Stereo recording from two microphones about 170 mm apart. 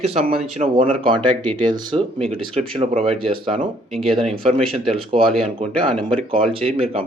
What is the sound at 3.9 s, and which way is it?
Speech, centre (ahead or behind).